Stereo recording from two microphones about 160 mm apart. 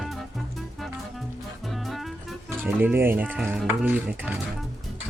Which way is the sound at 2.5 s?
10° right (ahead or behind).